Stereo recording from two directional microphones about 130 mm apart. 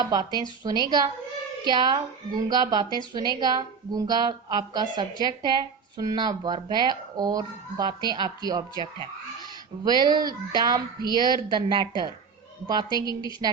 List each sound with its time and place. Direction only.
0.0 s speech: 30° right (ahead or behind)